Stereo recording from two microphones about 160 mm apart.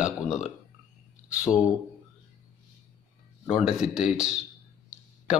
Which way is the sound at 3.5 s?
5° right (ahead or behind).